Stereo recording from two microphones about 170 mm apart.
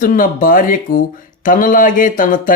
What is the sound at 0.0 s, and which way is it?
Speech, 55° left (ahead or behind).